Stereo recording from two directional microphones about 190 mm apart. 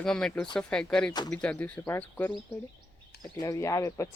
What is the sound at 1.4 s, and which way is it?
Speech, 5° left (ahead or behind).